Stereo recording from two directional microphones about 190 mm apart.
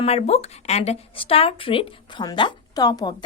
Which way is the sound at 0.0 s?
35° left (ahead or behind).